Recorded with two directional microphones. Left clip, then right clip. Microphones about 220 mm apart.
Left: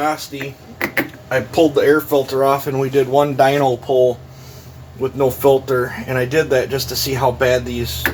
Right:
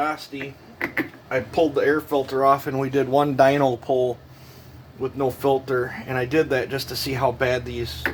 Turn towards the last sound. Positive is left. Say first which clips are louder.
# left 7 dB
turn(degrees=-40)  # may be behind; listen again after turning